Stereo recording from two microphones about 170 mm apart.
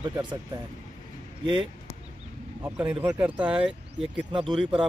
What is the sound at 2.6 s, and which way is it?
Speech, 10° right (ahead or behind).